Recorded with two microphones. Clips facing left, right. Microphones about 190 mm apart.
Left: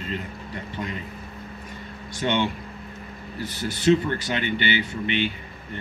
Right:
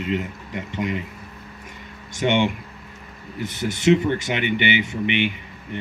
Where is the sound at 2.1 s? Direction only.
20° right (ahead or behind).